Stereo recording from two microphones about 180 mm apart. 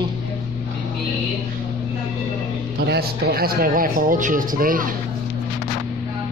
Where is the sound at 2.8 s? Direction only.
60° right (ahead or behind).